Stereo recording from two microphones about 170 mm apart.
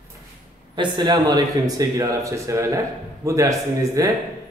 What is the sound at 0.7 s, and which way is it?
A man's voice, 25° right (ahead or behind).